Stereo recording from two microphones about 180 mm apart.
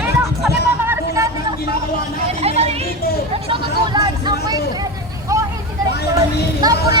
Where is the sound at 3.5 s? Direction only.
25° right (ahead or behind).